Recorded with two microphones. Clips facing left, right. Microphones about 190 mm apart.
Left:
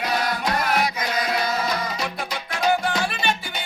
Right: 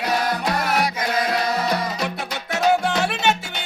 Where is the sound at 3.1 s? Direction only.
70° right (ahead or behind).